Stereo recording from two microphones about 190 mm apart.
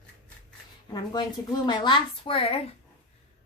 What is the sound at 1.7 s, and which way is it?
Speech, 25° left (ahead or behind).